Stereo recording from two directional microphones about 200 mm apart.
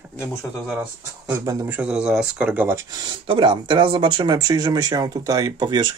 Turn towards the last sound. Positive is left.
turn(degrees=-20)  # may be behind; listen again after turning